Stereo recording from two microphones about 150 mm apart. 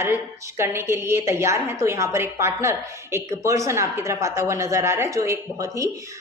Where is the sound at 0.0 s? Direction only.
15° right (ahead or behind).